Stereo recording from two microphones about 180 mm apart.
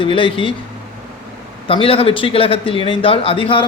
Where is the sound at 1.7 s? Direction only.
30° left (ahead or behind).